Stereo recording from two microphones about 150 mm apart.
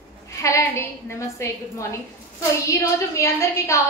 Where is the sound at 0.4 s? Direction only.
20° left (ahead or behind).